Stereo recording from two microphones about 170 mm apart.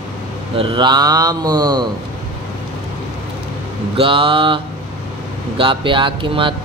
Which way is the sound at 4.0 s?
30° right (ahead or behind).